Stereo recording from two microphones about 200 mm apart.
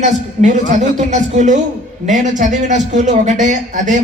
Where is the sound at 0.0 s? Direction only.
40° right (ahead or behind).